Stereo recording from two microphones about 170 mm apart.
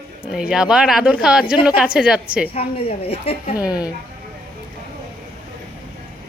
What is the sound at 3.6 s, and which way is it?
Speech, 25° left (ahead or behind).